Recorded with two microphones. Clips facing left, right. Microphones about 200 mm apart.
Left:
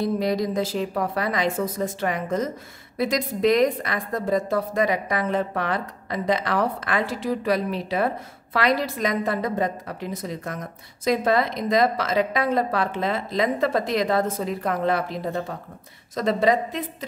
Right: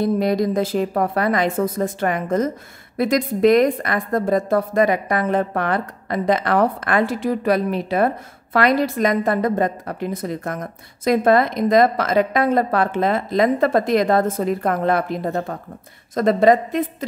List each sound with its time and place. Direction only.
0.0 s a woman's voice: 50° right (ahead or behind)